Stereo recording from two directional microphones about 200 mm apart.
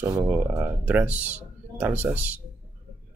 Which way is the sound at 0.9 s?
5° right (ahead or behind).